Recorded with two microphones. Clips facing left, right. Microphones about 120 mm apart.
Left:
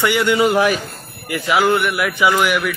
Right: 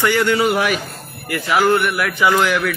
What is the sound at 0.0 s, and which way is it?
Speech, 15° left (ahead or behind).